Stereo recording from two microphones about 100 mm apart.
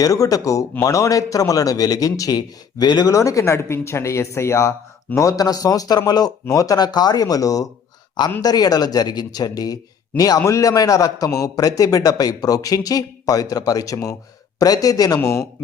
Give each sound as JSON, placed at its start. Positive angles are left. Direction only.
{"t": 0.0, "sound": "a man's voice", "side_deg": 35}